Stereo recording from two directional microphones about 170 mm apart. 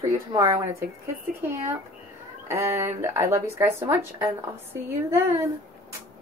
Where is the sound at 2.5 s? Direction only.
15° right (ahead or behind).